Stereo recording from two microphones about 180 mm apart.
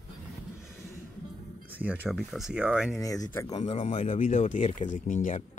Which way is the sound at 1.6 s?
10° right (ahead or behind).